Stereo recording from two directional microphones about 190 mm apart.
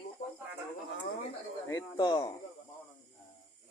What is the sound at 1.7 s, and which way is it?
Speech, 20° left (ahead or behind).